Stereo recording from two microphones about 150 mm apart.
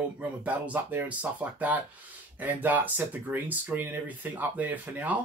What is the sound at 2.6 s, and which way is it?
Speech, 10° right (ahead or behind).